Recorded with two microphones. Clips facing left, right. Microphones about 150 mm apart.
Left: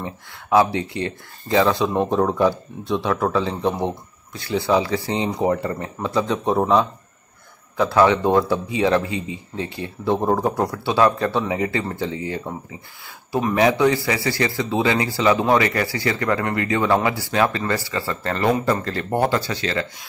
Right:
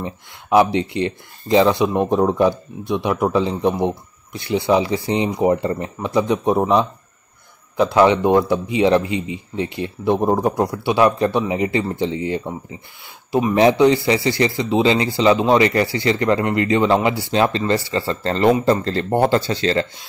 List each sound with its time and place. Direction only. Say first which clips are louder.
0.0 s speech: right 2 dB; 20° right (ahead or behind)
13.6 s speech: right 4 dB; 25° right (ahead or behind)